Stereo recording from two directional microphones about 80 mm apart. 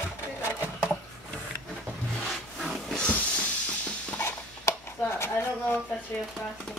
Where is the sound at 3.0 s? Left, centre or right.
Centre.